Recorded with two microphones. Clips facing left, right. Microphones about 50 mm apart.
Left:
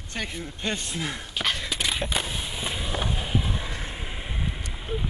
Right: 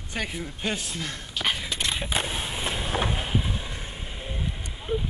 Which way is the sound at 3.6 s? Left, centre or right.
Centre.